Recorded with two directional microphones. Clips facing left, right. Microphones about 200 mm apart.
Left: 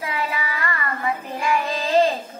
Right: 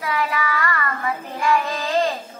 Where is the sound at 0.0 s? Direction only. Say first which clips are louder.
Right 3 dB; 25° left (ahead or behind).